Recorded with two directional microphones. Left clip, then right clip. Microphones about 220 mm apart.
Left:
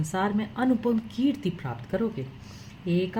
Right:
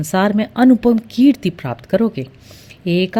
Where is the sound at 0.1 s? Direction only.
50° right (ahead or behind).